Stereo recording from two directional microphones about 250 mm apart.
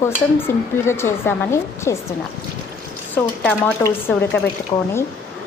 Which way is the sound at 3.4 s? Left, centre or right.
Centre.